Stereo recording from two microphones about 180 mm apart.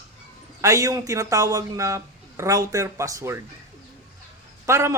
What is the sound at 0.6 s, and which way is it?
Speech, 15° right (ahead or behind).